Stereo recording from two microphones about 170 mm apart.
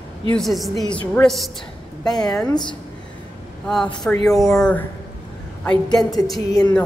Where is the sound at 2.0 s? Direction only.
25° left (ahead or behind).